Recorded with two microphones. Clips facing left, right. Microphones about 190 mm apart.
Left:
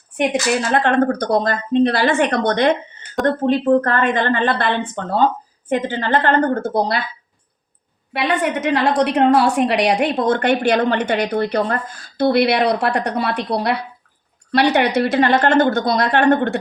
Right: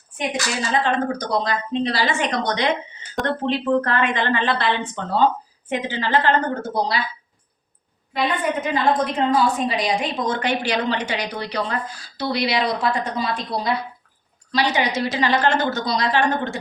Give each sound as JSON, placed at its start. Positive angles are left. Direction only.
{"t": 0.7, "sound": "a woman's voice", "side_deg": 60}
{"t": 8.1, "sound": "a woman's voice", "side_deg": 75}